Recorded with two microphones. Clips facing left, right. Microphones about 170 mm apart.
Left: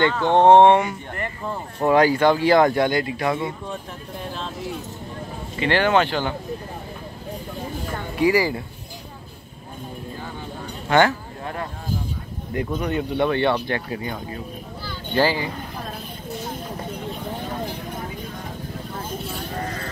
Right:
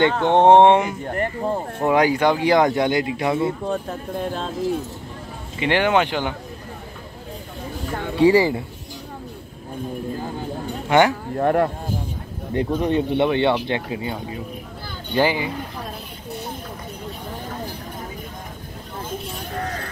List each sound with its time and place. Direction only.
0.2 s speech: 20° right (ahead or behind)
1.0 s speech: 45° right (ahead or behind)
1.9 s speech: 15° right (ahead or behind)
3.6 s speech: 45° right (ahead or behind)
5.6 s speech: 15° right (ahead or behind)
8.2 s speech: 25° right (ahead or behind)
10.9 s speech: 15° right (ahead or behind)
11.3 s speech: 60° right (ahead or behind)
12.5 s speech: 30° right (ahead or behind)